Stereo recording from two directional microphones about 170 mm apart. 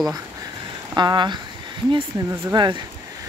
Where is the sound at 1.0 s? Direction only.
25° right (ahead or behind).